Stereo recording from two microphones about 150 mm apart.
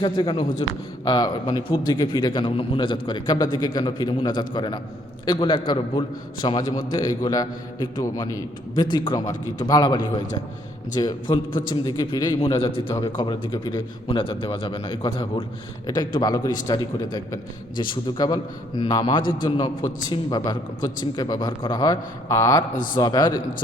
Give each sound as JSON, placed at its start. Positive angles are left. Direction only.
{"t": 0.0, "sound": "a man's voice", "side_deg": 35}